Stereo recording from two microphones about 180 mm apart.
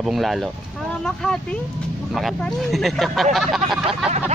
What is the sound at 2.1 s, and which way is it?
Speech, centre (ahead or behind).